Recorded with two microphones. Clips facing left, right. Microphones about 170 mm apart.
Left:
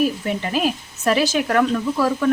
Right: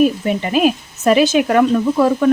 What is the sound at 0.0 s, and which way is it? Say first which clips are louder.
Speech: right 6 dB; 20° right (ahead or behind).